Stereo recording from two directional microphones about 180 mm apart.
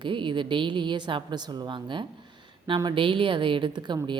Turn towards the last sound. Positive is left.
turn(degrees=-25)  # may be behind; listen again after turning